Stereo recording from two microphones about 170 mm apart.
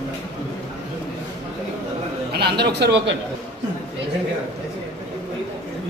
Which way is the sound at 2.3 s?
75° right (ahead or behind).